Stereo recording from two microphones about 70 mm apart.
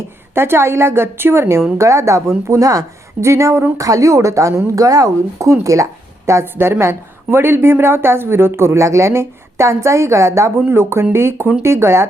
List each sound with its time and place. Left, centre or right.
0.3 s a woman's voice: right
3.2 s a woman's voice: right